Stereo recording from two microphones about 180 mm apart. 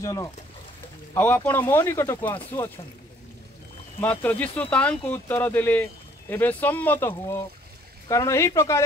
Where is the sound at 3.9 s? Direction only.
10° left (ahead or behind).